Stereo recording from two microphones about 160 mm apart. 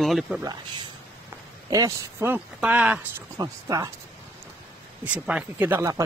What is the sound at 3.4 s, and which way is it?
Speech, 20° right (ahead or behind).